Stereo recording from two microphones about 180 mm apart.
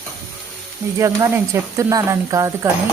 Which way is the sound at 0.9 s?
15° right (ahead or behind).